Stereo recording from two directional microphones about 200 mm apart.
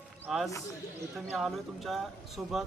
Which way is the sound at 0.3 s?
Centre (ahead or behind).